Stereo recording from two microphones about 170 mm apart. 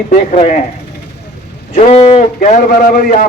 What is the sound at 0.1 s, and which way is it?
Speech, 55° left (ahead or behind).